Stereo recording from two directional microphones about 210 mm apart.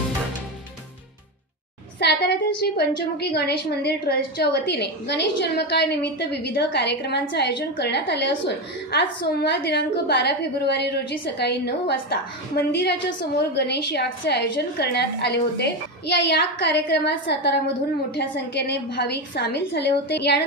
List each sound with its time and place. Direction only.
2.0 s a woman's voice: 50° left (ahead or behind)